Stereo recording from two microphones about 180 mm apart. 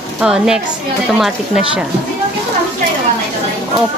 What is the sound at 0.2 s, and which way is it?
Speech, 5° right (ahead or behind).